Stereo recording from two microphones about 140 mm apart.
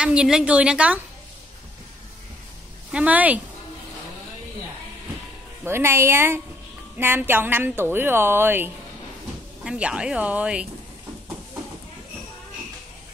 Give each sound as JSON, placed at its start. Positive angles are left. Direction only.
{"t": 0.0, "sound": "a woman's voice", "side_deg": -5}
{"t": 2.9, "sound": "a woman's voice", "side_deg": -10}
{"t": 5.7, "sound": "a woman's voice", "side_deg": -20}